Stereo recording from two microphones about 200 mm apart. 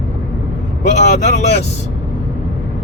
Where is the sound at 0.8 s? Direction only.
35° left (ahead or behind).